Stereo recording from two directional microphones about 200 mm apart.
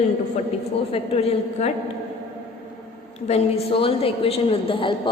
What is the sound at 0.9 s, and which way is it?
Speech, 30° left (ahead or behind).